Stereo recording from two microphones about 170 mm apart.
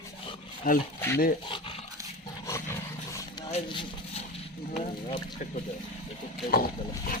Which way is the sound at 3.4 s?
35° left (ahead or behind).